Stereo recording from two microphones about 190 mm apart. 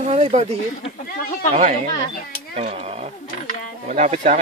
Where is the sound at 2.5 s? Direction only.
35° right (ahead or behind).